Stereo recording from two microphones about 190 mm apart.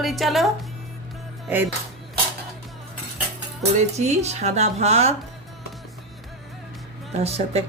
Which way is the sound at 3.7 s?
35° right (ahead or behind).